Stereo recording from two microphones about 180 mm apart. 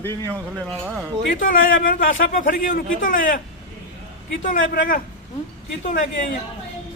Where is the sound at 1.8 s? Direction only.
50° left (ahead or behind).